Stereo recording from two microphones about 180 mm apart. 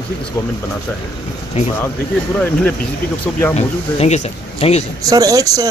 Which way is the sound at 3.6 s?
40° left (ahead or behind).